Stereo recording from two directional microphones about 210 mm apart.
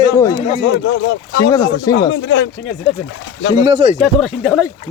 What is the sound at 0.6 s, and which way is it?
Speech, 60° left (ahead or behind).